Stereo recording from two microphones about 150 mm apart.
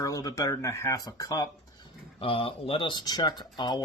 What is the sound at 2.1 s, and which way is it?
Speech, 40° left (ahead or behind).